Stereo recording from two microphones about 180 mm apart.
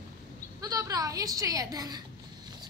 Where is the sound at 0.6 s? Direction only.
20° right (ahead or behind).